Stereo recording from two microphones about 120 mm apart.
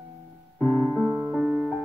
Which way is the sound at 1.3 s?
10° right (ahead or behind).